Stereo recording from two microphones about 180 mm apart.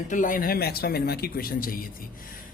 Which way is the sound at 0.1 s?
45° left (ahead or behind).